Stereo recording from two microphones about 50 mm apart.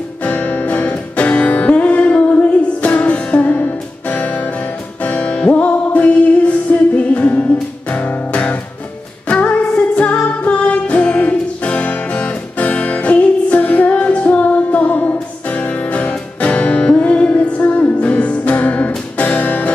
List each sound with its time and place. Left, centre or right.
0.2 s music: left